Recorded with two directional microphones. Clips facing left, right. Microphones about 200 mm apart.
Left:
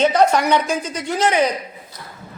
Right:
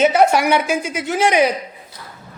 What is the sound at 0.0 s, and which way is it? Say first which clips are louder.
A woman's voice: right 1 dB; 10° right (ahead or behind).